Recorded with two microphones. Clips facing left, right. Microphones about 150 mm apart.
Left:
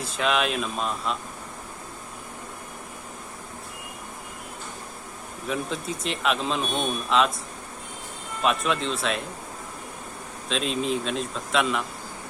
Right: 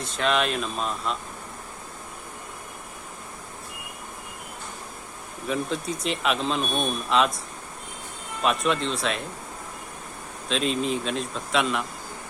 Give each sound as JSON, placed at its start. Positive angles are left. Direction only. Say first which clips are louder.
{"t": 0.0, "sound": "speech", "louder": "even", "side_deg": 5}
{"t": 5.5, "sound": "speech", "louder": "right 2 dB", "side_deg": 0}
{"t": 8.4, "sound": "speech", "louder": "right 1 dB", "side_deg": 0}
{"t": 10.5, "sound": "speech", "louder": "right 1 dB", "side_deg": 0}